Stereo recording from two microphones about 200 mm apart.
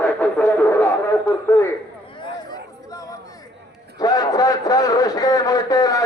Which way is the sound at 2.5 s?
20° left (ahead or behind).